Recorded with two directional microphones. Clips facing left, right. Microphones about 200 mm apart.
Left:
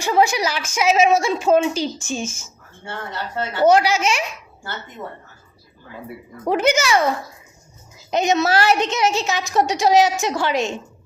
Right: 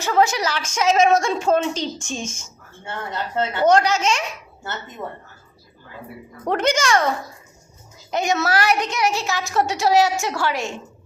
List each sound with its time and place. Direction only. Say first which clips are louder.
0.0 s a woman's voice: left 1 dB; 10° left (ahead or behind)
3.1 s a woman's voice: right 3 dB; 20° right (ahead or behind)
3.6 s a woman's voice: left 2 dB; 10° left (ahead or behind)
6.4 s a woman's voice: left 2 dB; 5° left (ahead or behind)
8.1 s a woman's voice: left 3 dB; 20° left (ahead or behind)